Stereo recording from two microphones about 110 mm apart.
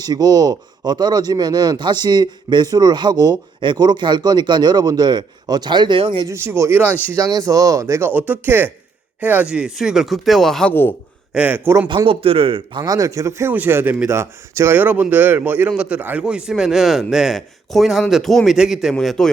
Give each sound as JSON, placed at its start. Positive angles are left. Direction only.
{"t": 0.0, "sound": "speech", "side_deg": -35}
{"t": 6.2, "sound": "speech", "side_deg": -25}
{"t": 7.2, "sound": "speech", "side_deg": -35}
{"t": 10.7, "sound": "a man's voice", "side_deg": 20}
{"t": 11.3, "sound": "speech", "side_deg": -15}
{"t": 11.9, "sound": "speech", "side_deg": -50}